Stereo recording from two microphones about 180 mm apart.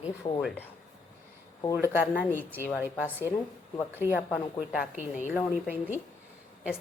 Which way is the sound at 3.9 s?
10° right (ahead or behind).